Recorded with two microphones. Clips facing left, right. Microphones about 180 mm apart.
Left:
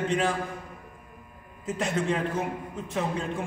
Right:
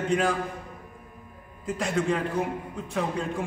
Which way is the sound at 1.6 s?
Centre (ahead or behind).